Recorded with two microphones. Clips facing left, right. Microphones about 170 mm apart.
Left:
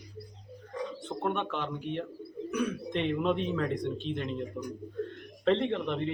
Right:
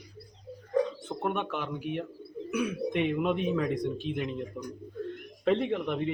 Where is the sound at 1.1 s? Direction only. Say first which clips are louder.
Even; 5° right (ahead or behind).